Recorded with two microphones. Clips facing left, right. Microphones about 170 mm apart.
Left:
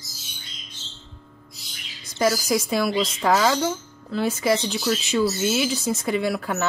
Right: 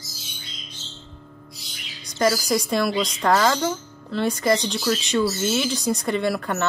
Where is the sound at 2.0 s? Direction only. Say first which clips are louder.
Right 1 dB; centre (ahead or behind).